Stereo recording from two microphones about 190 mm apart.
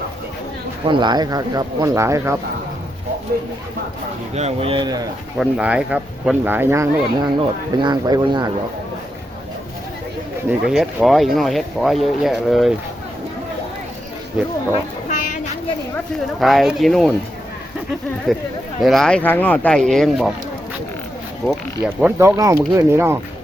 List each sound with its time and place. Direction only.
0.9 s speech: 25° right (ahead or behind)
4.4 s speech: 30° right (ahead or behind)
5.4 s speech: 5° right (ahead or behind); by 8.4 s 20° right (ahead or behind)
10.7 s speech: centre (ahead or behind)
15.1 s a sound: 40° left (ahead or behind)
16.4 s speech: centre (ahead or behind)
18.3 s speech: centre (ahead or behind)
21.8 s speech: 10° right (ahead or behind)